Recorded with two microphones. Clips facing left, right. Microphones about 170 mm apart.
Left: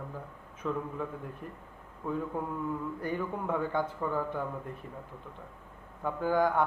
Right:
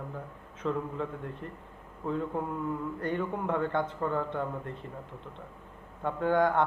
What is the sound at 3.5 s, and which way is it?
A man's voice, 5° left (ahead or behind).